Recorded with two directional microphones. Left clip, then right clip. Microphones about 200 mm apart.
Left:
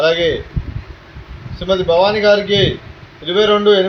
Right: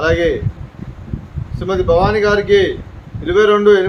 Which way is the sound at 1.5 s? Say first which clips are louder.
Left 1 dB; 20° right (ahead or behind).